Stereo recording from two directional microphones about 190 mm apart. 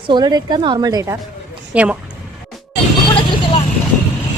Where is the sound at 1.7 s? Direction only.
5° right (ahead or behind).